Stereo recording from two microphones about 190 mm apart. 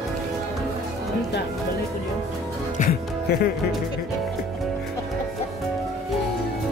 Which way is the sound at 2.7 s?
50° left (ahead or behind).